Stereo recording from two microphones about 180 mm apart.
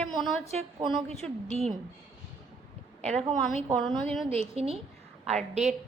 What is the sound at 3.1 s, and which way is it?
A woman's voice, 5° left (ahead or behind).